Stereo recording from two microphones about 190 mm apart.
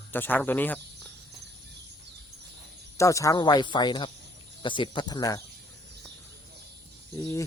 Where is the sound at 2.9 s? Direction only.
15° left (ahead or behind).